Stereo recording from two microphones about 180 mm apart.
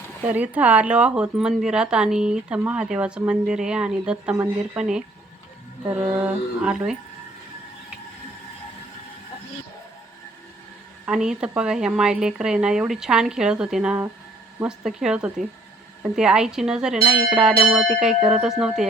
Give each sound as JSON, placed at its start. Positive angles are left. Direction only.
{"t": 0.3, "sound": "speech", "side_deg": -10}
{"t": 5.9, "sound": "mantra", "side_deg": -10}
{"t": 6.7, "sound": "speech", "side_deg": -5}
{"t": 11.0, "sound": "speech", "side_deg": -5}